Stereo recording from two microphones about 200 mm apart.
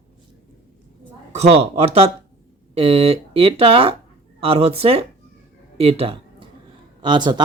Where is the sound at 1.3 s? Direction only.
30° right (ahead or behind).